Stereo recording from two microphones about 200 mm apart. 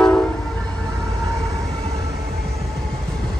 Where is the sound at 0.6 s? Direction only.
20° right (ahead or behind).